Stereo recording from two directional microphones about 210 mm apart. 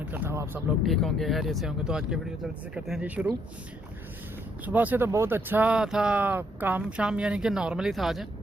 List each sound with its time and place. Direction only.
0.0 s speech: 10° right (ahead or behind)
4.6 s speech: 10° right (ahead or behind)